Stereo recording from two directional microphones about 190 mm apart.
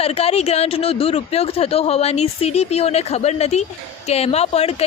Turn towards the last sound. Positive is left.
turn(degrees=30)  # may be behind; listen again after turning